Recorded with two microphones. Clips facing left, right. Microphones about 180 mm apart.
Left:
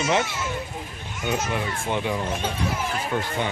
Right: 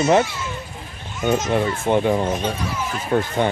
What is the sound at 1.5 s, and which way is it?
Speech, 50° right (ahead or behind).